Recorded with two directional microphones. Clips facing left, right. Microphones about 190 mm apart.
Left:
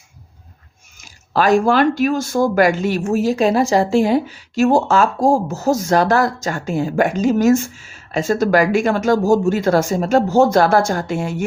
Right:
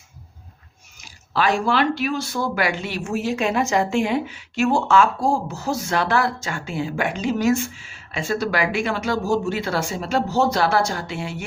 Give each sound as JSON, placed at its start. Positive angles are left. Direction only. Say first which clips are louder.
{"t": 0.9, "sound": "speech", "louder": "left 5 dB", "side_deg": 45}